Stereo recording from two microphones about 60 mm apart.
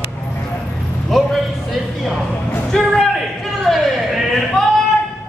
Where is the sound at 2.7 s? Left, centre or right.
Centre.